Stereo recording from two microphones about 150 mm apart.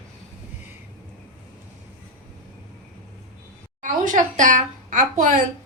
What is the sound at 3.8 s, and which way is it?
A child's voice, 60° right (ahead or behind).